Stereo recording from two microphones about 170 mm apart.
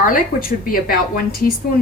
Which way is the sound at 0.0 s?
55° left (ahead or behind).